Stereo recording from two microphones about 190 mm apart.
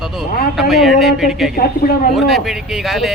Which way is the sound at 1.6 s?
50° left (ahead or behind).